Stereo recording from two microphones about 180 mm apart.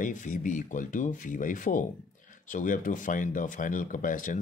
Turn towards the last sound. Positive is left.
turn(degrees=45)  # may be behind; listen again after turning